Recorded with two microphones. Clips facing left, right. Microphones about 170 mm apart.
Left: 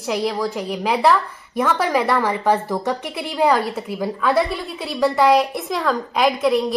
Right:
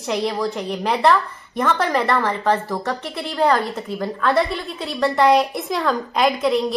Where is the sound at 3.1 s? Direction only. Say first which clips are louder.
Even; 5° left (ahead or behind).